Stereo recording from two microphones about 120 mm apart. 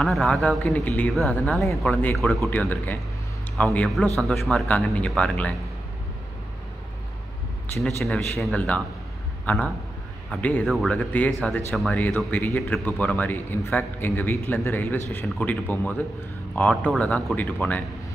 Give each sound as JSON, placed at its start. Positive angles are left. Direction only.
{"t": 0.0, "sound": "a man's voice", "side_deg": 10}
{"t": 1.6, "sound": "speech", "side_deg": 0}
{"t": 1.9, "sound": "a man's voice", "side_deg": 15}
{"t": 7.8, "sound": "a man's voice", "side_deg": 5}